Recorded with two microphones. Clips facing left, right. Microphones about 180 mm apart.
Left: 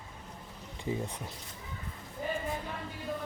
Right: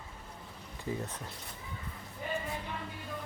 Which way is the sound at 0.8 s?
15° left (ahead or behind).